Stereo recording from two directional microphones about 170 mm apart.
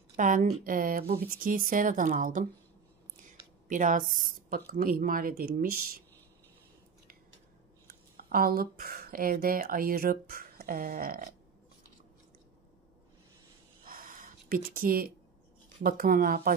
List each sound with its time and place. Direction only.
0.1 s speech: 50° right (ahead or behind)
3.6 s speech: 50° right (ahead or behind)
8.3 s speech: 60° right (ahead or behind)
13.8 s a sound: 55° right (ahead or behind)
15.8 s speech: 55° right (ahead or behind)